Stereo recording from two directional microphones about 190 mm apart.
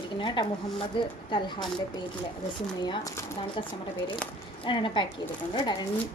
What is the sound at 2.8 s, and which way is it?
Speech, 20° left (ahead or behind).